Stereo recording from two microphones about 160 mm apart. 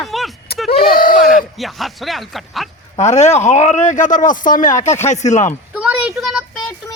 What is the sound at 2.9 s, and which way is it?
A man's voice, 45° left (ahead or behind).